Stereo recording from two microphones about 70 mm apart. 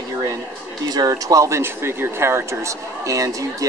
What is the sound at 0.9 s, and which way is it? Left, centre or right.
Speech, right.